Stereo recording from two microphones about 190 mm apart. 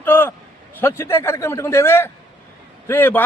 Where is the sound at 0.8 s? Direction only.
15° left (ahead or behind).